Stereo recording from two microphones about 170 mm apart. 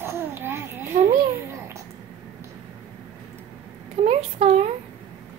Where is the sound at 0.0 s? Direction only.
15° right (ahead or behind).